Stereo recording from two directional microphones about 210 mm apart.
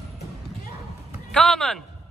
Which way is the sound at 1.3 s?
Centre (ahead or behind).